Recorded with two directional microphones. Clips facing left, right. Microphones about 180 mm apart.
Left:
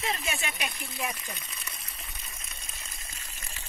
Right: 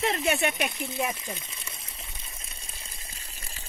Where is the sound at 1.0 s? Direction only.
25° right (ahead or behind).